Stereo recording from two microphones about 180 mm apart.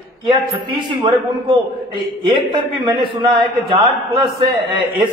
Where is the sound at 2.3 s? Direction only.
25° right (ahead or behind).